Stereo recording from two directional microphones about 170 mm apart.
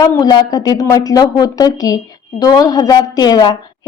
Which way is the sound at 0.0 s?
25° left (ahead or behind).